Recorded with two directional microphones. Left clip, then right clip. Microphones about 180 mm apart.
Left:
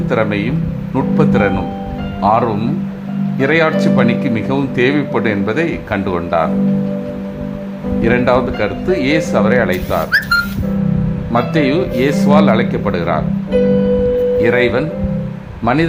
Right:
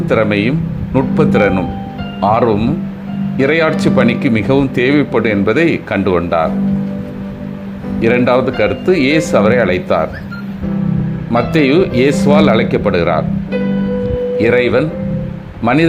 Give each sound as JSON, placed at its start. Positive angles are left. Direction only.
{"t": 0.1, "sound": "speech", "side_deg": -20}
{"t": 8.0, "sound": "speech", "side_deg": -20}
{"t": 11.3, "sound": "speech", "side_deg": -15}
{"t": 14.3, "sound": "speech", "side_deg": -20}